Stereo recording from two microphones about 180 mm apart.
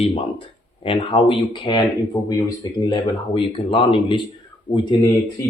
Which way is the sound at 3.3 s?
30° left (ahead or behind).